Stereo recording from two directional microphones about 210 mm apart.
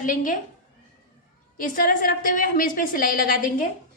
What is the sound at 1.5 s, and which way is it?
A woman's voice, 40° left (ahead or behind).